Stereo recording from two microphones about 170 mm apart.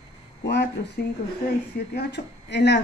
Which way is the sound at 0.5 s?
90° left.